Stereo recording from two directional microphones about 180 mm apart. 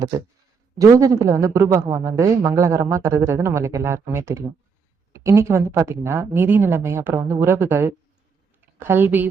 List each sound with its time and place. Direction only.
0.1 s a man's voice: 20° right (ahead or behind)